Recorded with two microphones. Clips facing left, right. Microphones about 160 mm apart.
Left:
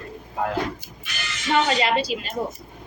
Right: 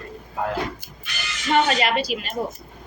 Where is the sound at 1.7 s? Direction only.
25° left (ahead or behind).